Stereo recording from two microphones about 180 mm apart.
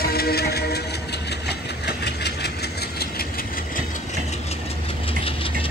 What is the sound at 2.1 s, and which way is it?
Vehicle, 65° left (ahead or behind).